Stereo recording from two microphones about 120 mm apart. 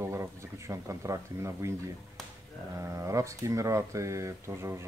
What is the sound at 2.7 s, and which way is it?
Speech, 25° right (ahead or behind).